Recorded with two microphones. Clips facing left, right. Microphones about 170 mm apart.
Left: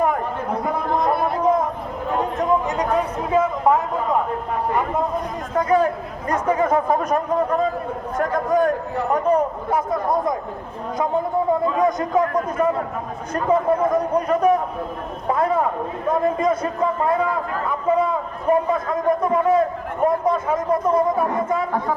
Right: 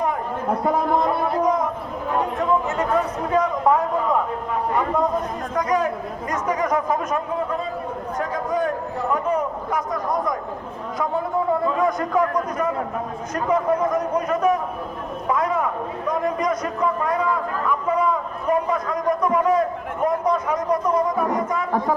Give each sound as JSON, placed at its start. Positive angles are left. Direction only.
{"t": 2.6, "sound": "a sound", "side_deg": 15}
{"t": 5.5, "sound": "a man's voice", "side_deg": 30}
{"t": 9.3, "sound": "a man's voice", "side_deg": 25}
{"t": 11.8, "sound": "a man's voice", "side_deg": 20}
{"t": 13.3, "sound": "a man's voice", "side_deg": 30}
{"t": 17.7, "sound": "a sound", "side_deg": 25}